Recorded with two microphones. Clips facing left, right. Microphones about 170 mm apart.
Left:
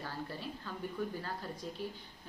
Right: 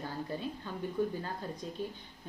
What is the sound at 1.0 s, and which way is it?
Speech, 20° right (ahead or behind).